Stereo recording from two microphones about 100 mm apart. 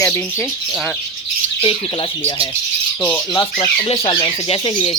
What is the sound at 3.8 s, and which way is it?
Speech, 70° left (ahead or behind).